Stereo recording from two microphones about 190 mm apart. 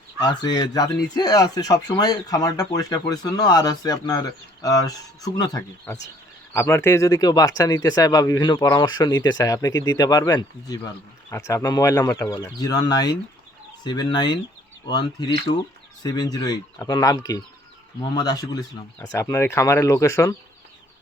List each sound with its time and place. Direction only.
0.2 s speech: 20° left (ahead or behind)